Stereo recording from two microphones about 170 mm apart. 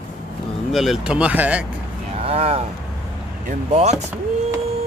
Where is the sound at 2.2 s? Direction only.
35° right (ahead or behind).